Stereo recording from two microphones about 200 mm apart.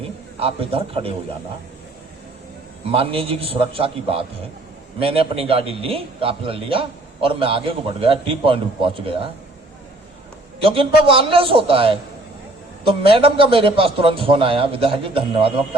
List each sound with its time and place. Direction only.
0.3 s a man's voice: 30° right (ahead or behind)
2.9 s a man's voice: 25° right (ahead or behind)
10.6 s a man's voice: 25° right (ahead or behind)